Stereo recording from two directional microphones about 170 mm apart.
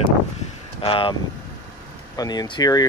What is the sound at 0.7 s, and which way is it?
Speech, 30° left (ahead or behind).